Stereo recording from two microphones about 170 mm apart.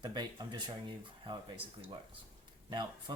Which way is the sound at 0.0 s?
25° right (ahead or behind).